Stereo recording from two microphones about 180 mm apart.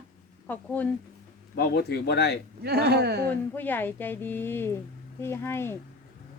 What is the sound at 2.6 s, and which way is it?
Speech, 60° right (ahead or behind).